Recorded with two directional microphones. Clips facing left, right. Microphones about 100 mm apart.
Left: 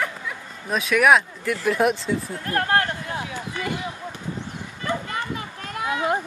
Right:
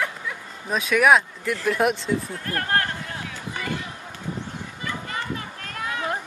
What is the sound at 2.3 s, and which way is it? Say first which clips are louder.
Speech: left 3 dB; 30° left (ahead or behind).